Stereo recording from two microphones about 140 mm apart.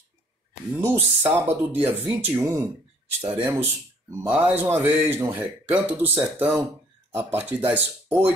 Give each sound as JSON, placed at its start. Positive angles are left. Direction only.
{"t": 0.7, "sound": "speech", "side_deg": -15}